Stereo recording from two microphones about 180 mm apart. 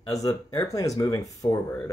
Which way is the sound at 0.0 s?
20° left (ahead or behind).